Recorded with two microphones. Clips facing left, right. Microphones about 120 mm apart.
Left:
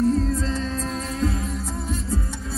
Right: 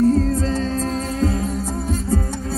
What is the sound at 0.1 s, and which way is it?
Music, 45° right (ahead or behind).